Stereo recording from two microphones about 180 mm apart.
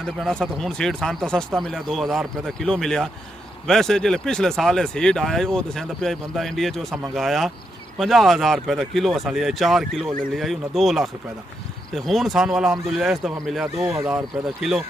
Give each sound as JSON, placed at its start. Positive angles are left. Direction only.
{"t": 0.0, "sound": "speech", "side_deg": 5}